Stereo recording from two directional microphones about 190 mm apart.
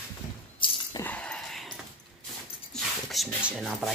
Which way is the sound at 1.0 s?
5° left (ahead or behind).